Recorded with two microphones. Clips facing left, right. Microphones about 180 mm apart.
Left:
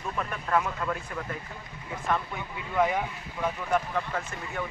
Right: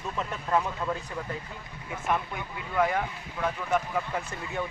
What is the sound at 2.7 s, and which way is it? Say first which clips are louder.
Speech: left 1 dB; 10° left (ahead or behind).